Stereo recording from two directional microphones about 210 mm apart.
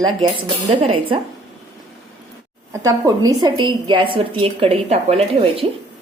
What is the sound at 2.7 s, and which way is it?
A woman's voice, 15° right (ahead or behind).